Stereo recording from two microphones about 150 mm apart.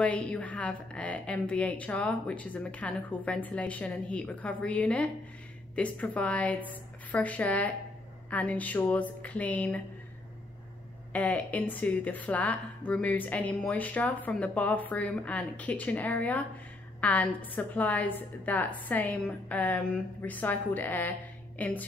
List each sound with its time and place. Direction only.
0.0 s speech: 10° left (ahead or behind)
11.1 s speech: 10° left (ahead or behind)